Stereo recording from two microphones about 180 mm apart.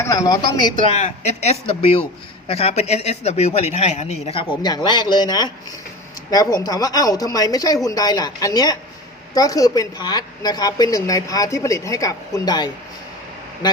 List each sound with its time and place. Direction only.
0.0 s a woman's voice: 20° left (ahead or behind)